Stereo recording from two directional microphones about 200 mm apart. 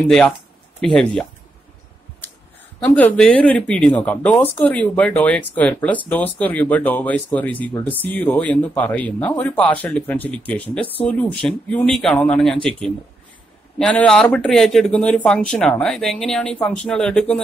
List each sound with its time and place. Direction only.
0.7 s speech: 5° left (ahead or behind)
2.8 s speech: 10° left (ahead or behind)
13.7 s speech: 5° left (ahead or behind)